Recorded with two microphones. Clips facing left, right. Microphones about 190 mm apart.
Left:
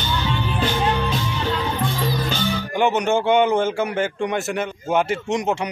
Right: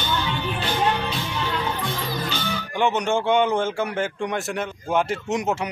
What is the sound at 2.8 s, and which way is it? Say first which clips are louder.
Speech: left 3 dB; 5° left (ahead or behind).